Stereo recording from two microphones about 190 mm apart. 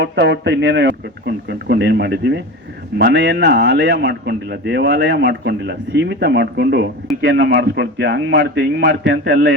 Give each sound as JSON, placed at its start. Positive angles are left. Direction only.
{"t": 0.0, "sound": "a man's voice", "side_deg": -65}